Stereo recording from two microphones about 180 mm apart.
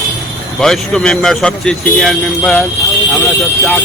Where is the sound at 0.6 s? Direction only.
5° left (ahead or behind).